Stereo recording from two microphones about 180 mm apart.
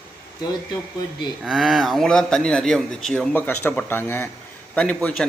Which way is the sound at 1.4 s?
Centre (ahead or behind).